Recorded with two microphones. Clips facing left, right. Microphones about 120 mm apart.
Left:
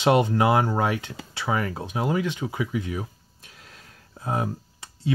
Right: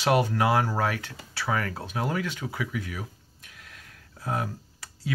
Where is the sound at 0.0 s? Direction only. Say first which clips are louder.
Left 3 dB; 20° left (ahead or behind).